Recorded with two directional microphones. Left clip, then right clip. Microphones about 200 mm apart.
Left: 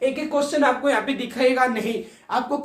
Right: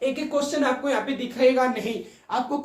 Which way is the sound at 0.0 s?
10° left (ahead or behind).